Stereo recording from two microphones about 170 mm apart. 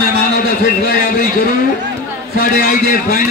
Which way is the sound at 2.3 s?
60° left (ahead or behind).